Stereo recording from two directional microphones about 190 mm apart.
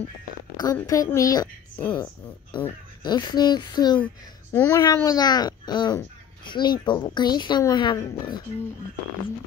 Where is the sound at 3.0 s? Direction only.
25° left (ahead or behind).